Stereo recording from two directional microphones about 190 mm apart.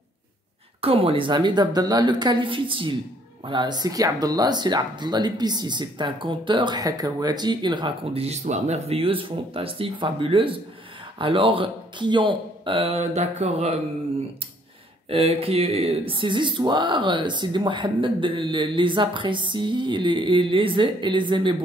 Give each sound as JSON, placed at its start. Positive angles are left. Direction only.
{"t": 0.7, "sound": "speech", "side_deg": -30}
{"t": 15.0, "sound": "speech", "side_deg": -30}